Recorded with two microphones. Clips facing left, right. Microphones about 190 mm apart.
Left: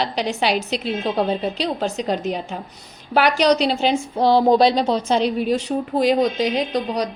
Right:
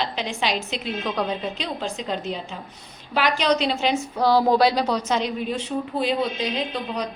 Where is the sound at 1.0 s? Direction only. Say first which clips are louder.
Left 5 dB; 30° left (ahead or behind).